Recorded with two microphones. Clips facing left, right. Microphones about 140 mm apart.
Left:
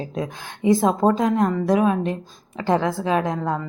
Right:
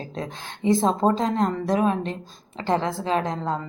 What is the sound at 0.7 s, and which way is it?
A woman's voice, 25° right (ahead or behind).